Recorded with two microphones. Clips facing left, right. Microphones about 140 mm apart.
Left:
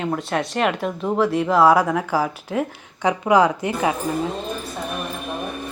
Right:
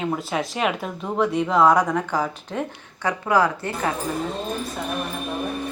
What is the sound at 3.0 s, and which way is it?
Speech, 20° left (ahead or behind).